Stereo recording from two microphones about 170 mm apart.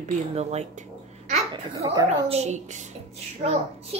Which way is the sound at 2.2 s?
40° right (ahead or behind).